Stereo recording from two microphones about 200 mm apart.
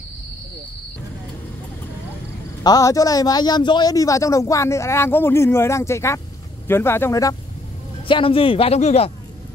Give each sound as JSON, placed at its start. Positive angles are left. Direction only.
{"t": 2.6, "sound": "a man's voice", "side_deg": 15}
{"t": 8.1, "sound": "a man's voice", "side_deg": 25}